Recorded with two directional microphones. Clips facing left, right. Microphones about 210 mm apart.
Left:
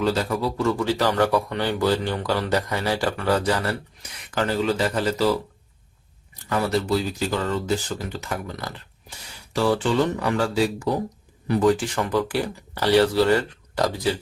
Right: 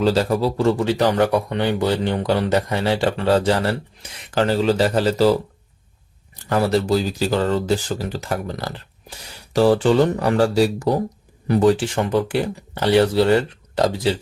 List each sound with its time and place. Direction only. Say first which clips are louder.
0.0 s speech: right 5 dB; 35° right (ahead or behind)
6.5 s speech: right 4 dB; 35° right (ahead or behind)
10.2 s speech: right 5 dB; 35° right (ahead or behind)